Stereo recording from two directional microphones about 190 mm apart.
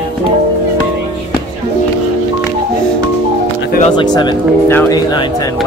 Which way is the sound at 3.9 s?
25° left (ahead or behind).